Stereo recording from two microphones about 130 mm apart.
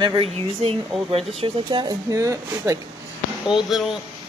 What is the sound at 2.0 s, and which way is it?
Speech, 25° right (ahead or behind).